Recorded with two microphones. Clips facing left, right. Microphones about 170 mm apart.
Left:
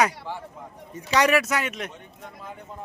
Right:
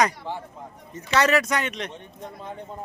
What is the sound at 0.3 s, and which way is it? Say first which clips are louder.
Speech: right 2 dB; 20° right (ahead or behind).